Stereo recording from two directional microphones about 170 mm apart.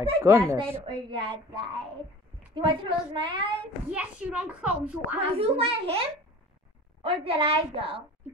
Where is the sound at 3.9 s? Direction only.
5° right (ahead or behind).